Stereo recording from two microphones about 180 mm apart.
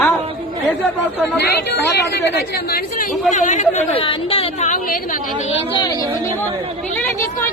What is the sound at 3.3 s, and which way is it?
Speech, 45° left (ahead or behind).